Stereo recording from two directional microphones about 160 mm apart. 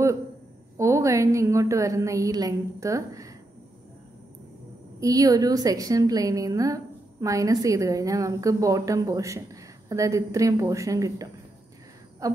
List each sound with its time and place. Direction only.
0.7 s a woman's voice: 20° right (ahead or behind)
5.0 s a woman's voice: 20° right (ahead or behind)
12.2 s a sound: 20° right (ahead or behind)